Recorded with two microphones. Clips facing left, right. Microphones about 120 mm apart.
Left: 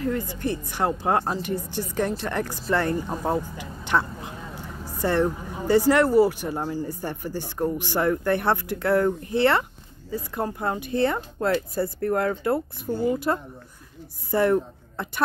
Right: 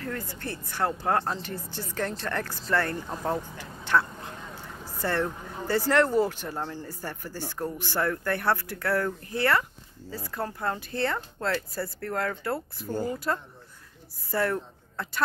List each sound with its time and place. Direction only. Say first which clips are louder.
0.0 s a woman's voice: left 8 dB; 20° left (ahead or behind)